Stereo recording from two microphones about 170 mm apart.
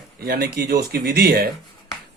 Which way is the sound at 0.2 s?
60° right (ahead or behind).